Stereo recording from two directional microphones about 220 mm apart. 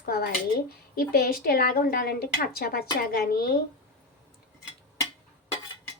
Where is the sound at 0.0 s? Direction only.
45° left (ahead or behind).